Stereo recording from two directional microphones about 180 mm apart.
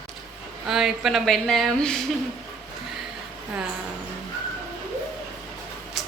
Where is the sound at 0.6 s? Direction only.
Centre (ahead or behind).